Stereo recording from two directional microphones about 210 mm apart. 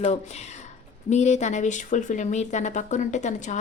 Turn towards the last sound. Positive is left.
turn(degrees=35)  # may be behind; listen again after turning